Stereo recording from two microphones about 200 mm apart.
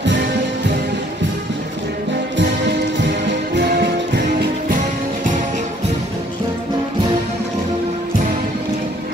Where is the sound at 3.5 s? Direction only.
55° right (ahead or behind).